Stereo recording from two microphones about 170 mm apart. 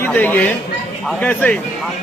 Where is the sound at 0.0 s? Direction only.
10° left (ahead or behind).